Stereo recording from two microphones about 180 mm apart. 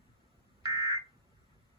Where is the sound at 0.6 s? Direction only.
20° right (ahead or behind).